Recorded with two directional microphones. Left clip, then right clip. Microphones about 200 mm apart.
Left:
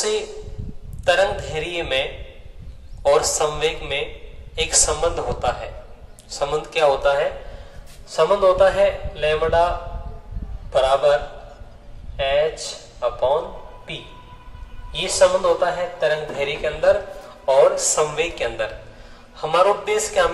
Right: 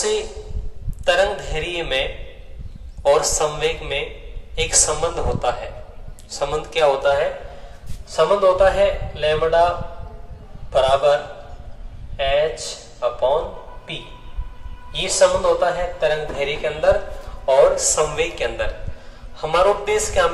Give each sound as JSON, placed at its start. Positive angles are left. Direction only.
{"t": 1.0, "sound": "a man's voice", "side_deg": 20}
{"t": 10.7, "sound": "a man's voice", "side_deg": 15}
{"t": 12.2, "sound": "a man's voice", "side_deg": 15}
{"t": 14.9, "sound": "a man's voice", "side_deg": 20}